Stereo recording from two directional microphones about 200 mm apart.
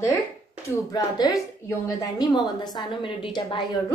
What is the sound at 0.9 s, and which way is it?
A woman's voice, 20° left (ahead or behind).